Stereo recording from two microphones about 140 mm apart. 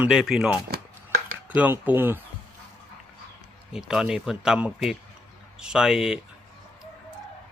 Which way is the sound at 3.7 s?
5° right (ahead or behind).